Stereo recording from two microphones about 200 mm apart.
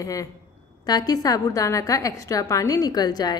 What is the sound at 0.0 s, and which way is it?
A woman's voice, 15° left (ahead or behind).